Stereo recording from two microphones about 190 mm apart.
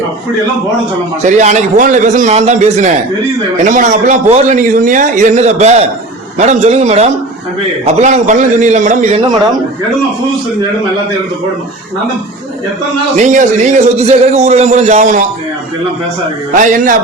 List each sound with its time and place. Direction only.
1.2 s a man's voice: 40° right (ahead or behind)
13.1 s a man's voice: 40° right (ahead or behind)
16.6 s a man's voice: 45° right (ahead or behind)